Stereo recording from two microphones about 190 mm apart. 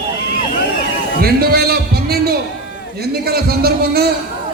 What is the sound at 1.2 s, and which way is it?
Music, 55° right (ahead or behind).